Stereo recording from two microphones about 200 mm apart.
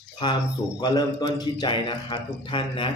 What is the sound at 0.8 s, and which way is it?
A man's voice, 20° left (ahead or behind).